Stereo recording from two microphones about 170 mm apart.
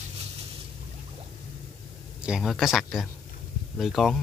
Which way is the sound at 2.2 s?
5° right (ahead or behind).